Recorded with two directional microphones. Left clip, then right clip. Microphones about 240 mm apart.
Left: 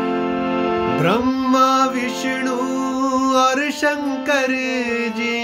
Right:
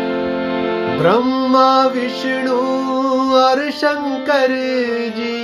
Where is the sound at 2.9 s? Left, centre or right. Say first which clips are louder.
Right 3 dB; centre.